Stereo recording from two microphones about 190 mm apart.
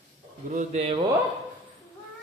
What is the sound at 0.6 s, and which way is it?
Speech, 40° right (ahead or behind).